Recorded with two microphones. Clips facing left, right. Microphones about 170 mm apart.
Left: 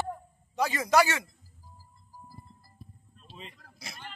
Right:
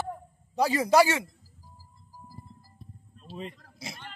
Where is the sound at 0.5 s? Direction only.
30° right (ahead or behind).